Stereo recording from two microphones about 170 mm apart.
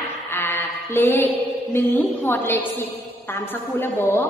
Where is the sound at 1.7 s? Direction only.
10° left (ahead or behind).